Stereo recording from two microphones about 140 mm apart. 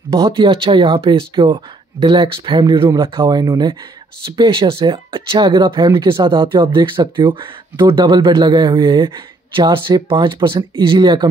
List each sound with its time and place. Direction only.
0.1 s speech: 25° right (ahead or behind)
0.5 s speech: 35° right (ahead or behind)